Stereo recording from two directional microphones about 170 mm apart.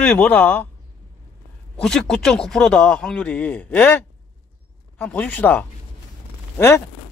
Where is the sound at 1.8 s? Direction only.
5° left (ahead or behind).